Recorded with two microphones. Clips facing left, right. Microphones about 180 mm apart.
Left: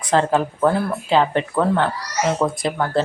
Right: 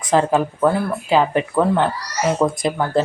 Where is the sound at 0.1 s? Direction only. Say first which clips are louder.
Right 1 dB; 10° right (ahead or behind).